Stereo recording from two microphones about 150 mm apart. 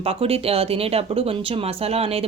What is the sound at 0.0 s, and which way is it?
Speech, 40° right (ahead or behind).